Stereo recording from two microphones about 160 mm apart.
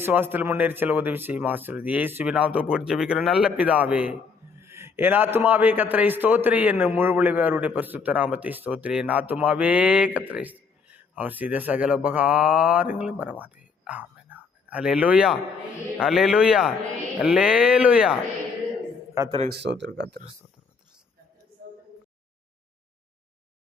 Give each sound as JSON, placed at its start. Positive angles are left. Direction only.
{"t": 0.0, "sound": "a man's voice", "side_deg": -15}
{"t": 13.4, "sound": "a sound", "side_deg": -10}
{"t": 16.0, "sound": "speech", "side_deg": 0}
{"t": 19.5, "sound": "speech", "side_deg": -90}